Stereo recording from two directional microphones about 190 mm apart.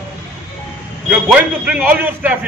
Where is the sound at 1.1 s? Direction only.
5° right (ahead or behind).